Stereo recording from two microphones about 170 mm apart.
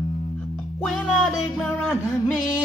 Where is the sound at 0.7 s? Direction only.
5° left (ahead or behind).